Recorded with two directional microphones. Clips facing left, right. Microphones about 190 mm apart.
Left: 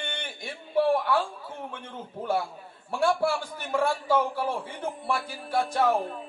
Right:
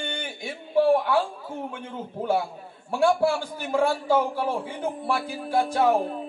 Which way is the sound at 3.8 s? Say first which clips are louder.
Right 3 dB; 15° right (ahead or behind).